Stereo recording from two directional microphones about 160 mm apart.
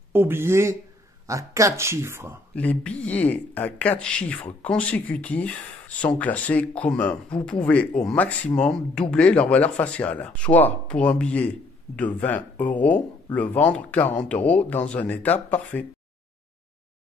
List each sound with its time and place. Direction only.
0.1 s speech: 15° right (ahead or behind)
2.5 s speech: 10° left (ahead or behind)